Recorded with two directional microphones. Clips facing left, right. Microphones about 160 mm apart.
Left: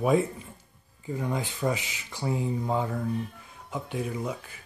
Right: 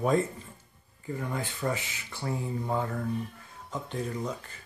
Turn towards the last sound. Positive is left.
turn(degrees=10)  # may be behind; listen again after turning